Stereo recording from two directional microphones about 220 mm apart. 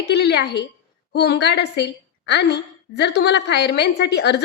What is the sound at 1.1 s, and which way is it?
A woman's voice, 50° left (ahead or behind).